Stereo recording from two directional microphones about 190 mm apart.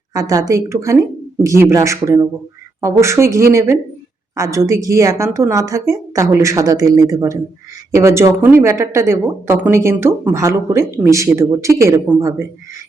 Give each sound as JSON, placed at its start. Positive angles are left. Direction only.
{"t": 0.1, "sound": "a woman's voice", "side_deg": -20}